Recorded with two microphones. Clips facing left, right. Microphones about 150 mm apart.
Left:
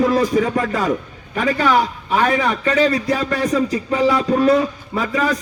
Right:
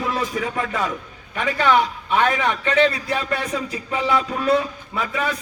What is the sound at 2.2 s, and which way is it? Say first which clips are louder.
A man's voice: left 3 dB; 35° left (ahead or behind).